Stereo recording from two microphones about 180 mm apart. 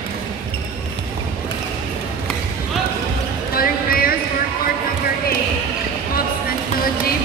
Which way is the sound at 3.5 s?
55° left (ahead or behind).